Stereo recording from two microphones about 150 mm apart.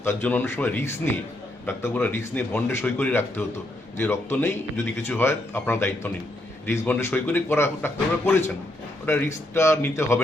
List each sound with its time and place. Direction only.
0.0 s a man's voice: 15° left (ahead or behind)